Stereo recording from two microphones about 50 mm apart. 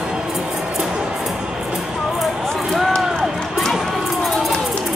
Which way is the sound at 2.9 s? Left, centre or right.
Centre.